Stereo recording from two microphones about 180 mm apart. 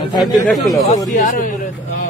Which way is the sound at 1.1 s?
50° left (ahead or behind).